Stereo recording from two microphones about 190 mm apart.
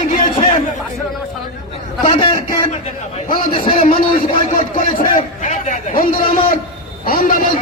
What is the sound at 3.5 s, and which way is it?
Speech, 30° left (ahead or behind).